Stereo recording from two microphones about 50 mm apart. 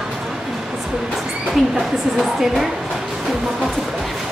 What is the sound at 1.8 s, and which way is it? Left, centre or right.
Speech, centre.